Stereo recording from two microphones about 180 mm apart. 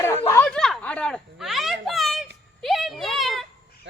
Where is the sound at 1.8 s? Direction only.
Centre (ahead or behind).